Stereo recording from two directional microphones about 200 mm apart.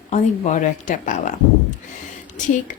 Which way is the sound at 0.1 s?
35° left (ahead or behind).